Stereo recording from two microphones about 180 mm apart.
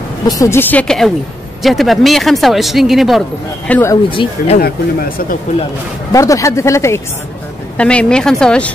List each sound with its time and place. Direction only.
0.3 s speech: 15° left (ahead or behind)
3.9 s speech: 30° left (ahead or behind)
4.6 s speech: 55° left (ahead or behind)
6.1 s speech: 15° left (ahead or behind)